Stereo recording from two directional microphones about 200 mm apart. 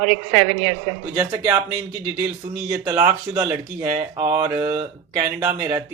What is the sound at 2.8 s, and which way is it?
Speech, 10° right (ahead or behind).